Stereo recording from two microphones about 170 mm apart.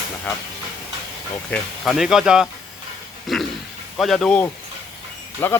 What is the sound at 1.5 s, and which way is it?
Speech, centre (ahead or behind).